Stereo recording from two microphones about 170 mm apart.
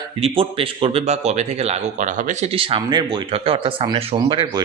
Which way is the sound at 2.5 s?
30° right (ahead or behind).